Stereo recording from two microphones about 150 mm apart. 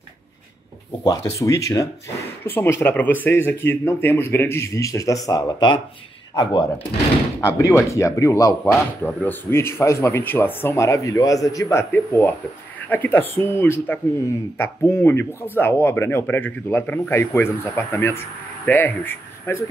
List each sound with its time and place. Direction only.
1.0 s speech: 25° left (ahead or behind)
7.3 s speech: 20° left (ahead or behind)